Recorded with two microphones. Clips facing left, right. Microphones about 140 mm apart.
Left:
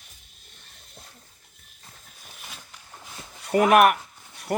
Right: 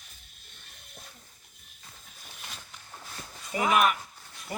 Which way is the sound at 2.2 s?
5° left (ahead or behind).